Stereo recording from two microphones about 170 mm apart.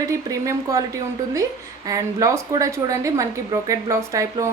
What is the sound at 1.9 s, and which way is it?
Speech, 20° right (ahead or behind).